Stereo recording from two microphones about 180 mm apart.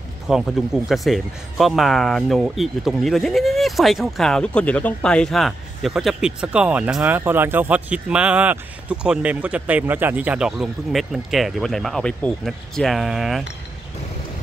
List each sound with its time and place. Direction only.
0.3 s speech: centre (ahead or behind)